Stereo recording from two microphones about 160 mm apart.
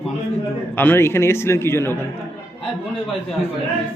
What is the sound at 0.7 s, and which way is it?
A man's voice, 15° left (ahead or behind).